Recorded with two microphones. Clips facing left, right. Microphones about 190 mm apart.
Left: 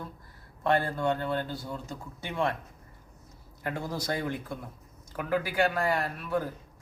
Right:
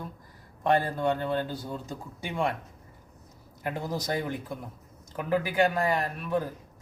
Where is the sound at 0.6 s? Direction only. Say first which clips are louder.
Right 2 dB; 15° right (ahead or behind).